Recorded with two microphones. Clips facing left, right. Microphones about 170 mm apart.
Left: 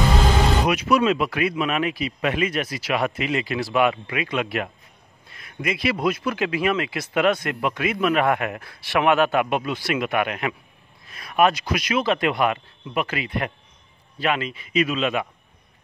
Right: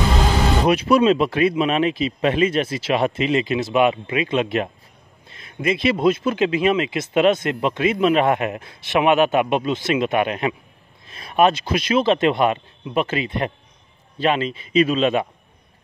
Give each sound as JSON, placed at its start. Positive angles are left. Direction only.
{"t": 0.7, "sound": "speech", "side_deg": -30}